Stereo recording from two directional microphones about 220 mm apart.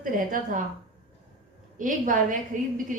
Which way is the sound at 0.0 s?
40° right (ahead or behind).